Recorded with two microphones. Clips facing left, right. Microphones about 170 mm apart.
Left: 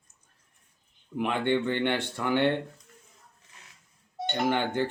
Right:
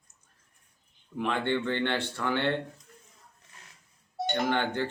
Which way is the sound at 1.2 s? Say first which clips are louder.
Left 2 dB; 15° left (ahead or behind).